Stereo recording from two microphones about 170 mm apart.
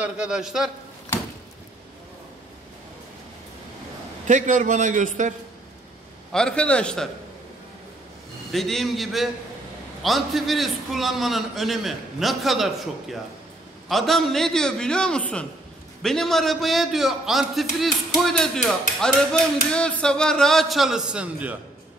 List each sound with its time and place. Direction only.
0.0 s a man's voice: 5° right (ahead or behind)
4.3 s a man's voice: 45° right (ahead or behind)
6.3 s a man's voice: 5° left (ahead or behind)
8.5 s a man's voice: centre (ahead or behind)